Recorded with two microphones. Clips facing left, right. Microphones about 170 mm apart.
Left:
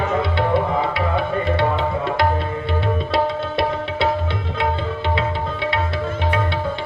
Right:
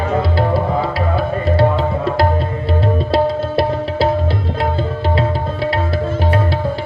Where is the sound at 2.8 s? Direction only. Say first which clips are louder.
Right 5 dB; 30° right (ahead or behind).